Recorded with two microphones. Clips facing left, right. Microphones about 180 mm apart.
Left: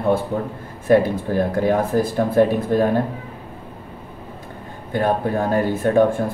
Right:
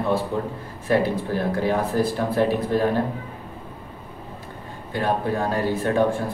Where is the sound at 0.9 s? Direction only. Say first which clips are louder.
Left 5 dB; 50° left (ahead or behind).